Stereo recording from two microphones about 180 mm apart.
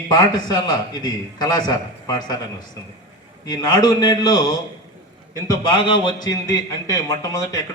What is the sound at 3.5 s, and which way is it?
A man's voice, 25° left (ahead or behind).